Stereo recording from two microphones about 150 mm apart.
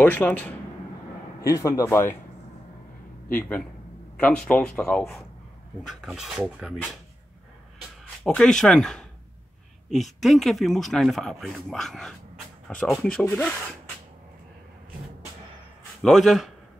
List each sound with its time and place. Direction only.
0.0 s a man's voice: 10° left (ahead or behind)
3.3 s a man's voice: 10° left (ahead or behind)
8.3 s speech: 5° left (ahead or behind)
16.0 s speech: centre (ahead or behind)